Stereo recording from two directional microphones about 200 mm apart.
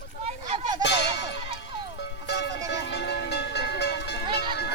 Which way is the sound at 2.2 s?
55° left (ahead or behind).